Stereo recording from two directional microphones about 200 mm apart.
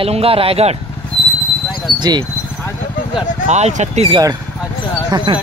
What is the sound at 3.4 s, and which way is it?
Speech, 35° right (ahead or behind).